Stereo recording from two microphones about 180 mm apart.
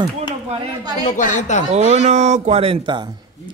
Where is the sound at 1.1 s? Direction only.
45° left (ahead or behind).